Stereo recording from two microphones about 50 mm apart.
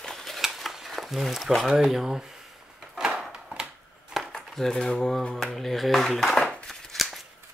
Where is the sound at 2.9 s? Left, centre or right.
Centre.